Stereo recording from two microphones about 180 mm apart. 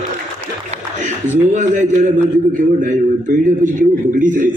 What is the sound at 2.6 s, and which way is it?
A man's voice, 45° right (ahead or behind).